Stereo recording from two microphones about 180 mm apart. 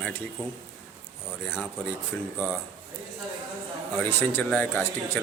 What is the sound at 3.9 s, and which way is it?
Speech, 10° left (ahead or behind).